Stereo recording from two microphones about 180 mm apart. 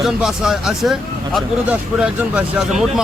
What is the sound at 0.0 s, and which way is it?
Speech, centre (ahead or behind).